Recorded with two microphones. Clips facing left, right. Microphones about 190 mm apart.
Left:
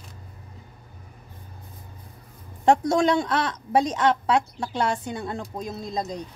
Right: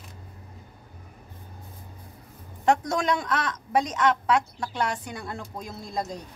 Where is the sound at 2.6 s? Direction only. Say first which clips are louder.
Left 4 dB; 30° left (ahead or behind).